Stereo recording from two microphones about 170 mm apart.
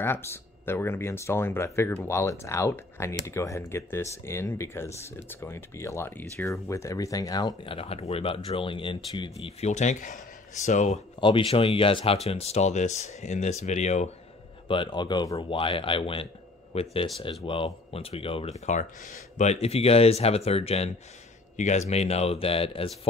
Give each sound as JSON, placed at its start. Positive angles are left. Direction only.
{"t": 0.0, "sound": "speech", "side_deg": 15}
{"t": 11.1, "sound": "speech", "side_deg": 30}
{"t": 14.7, "sound": "speech", "side_deg": 30}